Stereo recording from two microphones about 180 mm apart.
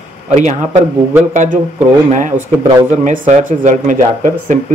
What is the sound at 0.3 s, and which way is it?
Speech, 40° right (ahead or behind).